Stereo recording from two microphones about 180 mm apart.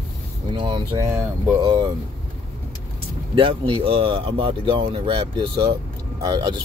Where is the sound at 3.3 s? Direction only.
30° right (ahead or behind).